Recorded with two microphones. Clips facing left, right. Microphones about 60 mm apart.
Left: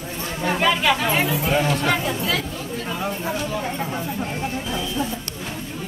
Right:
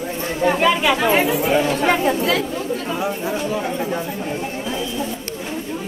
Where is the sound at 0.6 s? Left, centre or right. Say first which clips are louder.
Even; centre.